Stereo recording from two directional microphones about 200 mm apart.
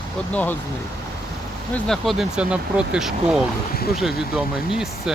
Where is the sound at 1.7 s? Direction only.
Centre (ahead or behind).